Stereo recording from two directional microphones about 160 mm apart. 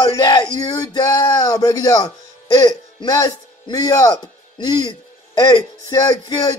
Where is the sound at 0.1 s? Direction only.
25° left (ahead or behind).